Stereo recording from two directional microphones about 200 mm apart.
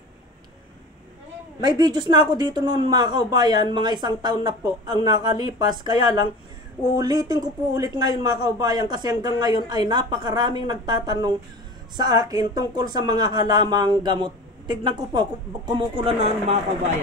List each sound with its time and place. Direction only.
1.6 s speech: 20° right (ahead or behind)